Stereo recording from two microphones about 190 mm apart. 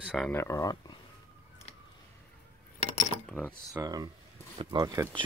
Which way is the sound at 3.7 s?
20° right (ahead or behind).